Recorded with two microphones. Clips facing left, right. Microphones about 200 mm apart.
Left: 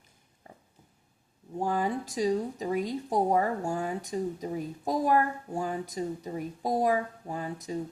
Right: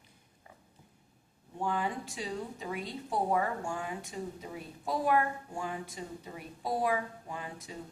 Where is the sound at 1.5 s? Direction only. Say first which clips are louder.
Left 5 dB; 40° left (ahead or behind).